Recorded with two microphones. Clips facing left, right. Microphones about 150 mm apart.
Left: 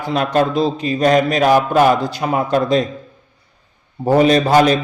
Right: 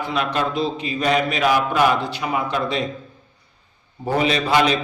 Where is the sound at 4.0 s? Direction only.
45° left (ahead or behind).